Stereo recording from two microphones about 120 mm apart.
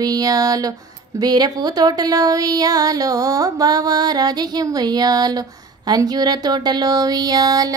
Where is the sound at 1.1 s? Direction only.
35° right (ahead or behind).